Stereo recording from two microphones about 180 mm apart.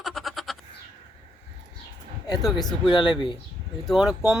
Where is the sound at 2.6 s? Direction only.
25° left (ahead or behind).